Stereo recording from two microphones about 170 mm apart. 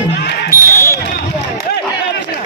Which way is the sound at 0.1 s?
85° left.